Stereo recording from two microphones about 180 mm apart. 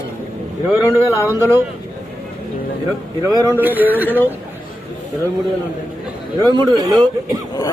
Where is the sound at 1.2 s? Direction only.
15° right (ahead or behind).